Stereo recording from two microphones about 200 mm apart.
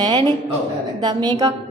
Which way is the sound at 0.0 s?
20° right (ahead or behind).